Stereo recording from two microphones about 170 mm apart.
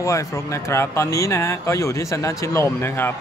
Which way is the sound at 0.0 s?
20° left (ahead or behind).